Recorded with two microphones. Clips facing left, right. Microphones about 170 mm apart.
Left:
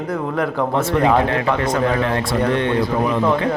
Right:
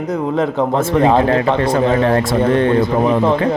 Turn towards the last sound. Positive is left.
turn(degrees=-25)  # may be behind; listen again after turning